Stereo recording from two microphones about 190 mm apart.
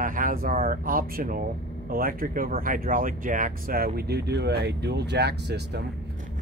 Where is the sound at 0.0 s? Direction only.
45° right (ahead or behind).